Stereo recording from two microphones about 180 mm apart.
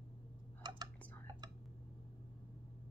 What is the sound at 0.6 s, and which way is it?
Whispering, 20° right (ahead or behind).